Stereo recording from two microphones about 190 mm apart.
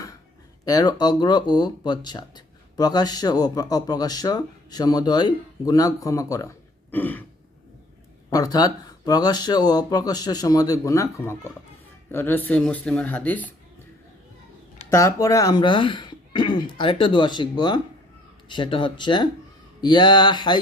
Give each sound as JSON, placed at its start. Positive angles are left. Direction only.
{"t": 0.6, "sound": "speech", "side_deg": 20}
{"t": 8.3, "sound": "speech", "side_deg": 20}
{"t": 14.8, "sound": "speech", "side_deg": 15}